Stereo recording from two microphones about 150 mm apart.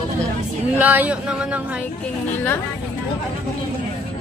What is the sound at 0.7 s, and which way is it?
Speech, 10° right (ahead or behind).